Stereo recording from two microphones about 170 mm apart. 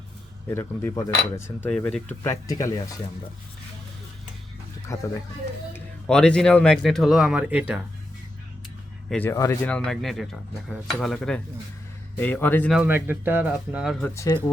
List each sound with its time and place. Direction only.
0.5 s cutlery: 15° left (ahead or behind)
2.5 s speech: 20° left (ahead or behind)
4.9 s cutlery: 20° left (ahead or behind)
5.7 s speech: 5° left (ahead or behind)
9.0 s speech: 5° left (ahead or behind)
9.3 s cutlery: 20° left (ahead or behind)
9.6 s speech: 5° left (ahead or behind)
12.2 s cutlery: 10° left (ahead or behind)
12.7 s speech: 10° right (ahead or behind)
14.0 s cutlery: 15° left (ahead or behind)